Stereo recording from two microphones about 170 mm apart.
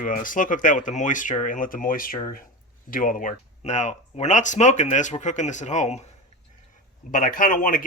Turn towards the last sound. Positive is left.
turn(degrees=55)  # may be behind; listen again after turning